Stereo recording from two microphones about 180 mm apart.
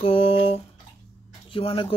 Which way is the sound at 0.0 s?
30° left (ahead or behind).